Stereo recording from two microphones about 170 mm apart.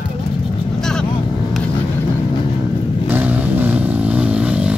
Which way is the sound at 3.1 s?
10° right (ahead or behind).